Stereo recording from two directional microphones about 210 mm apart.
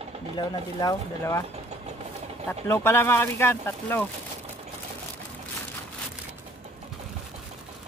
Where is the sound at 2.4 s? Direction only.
10° left (ahead or behind).